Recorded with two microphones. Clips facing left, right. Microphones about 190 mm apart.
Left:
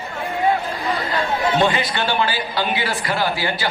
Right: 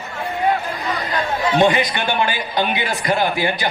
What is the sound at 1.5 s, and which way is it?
A man's voice, 20° right (ahead or behind).